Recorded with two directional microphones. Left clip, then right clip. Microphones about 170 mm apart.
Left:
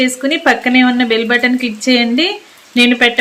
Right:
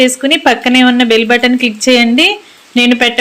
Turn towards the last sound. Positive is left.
turn(degrees=-20)  # may be behind; listen again after turning